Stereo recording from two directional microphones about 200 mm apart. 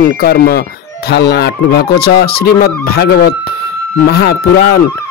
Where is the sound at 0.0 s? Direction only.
50° left (ahead or behind).